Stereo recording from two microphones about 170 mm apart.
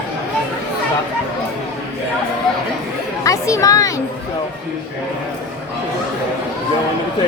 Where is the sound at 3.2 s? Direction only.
20° left (ahead or behind).